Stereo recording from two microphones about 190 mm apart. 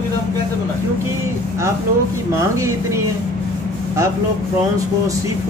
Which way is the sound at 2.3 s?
15° right (ahead or behind).